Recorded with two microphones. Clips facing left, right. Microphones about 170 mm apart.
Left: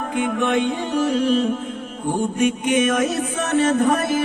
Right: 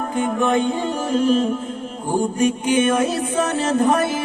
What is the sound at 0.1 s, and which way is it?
Music, 35° right (ahead or behind).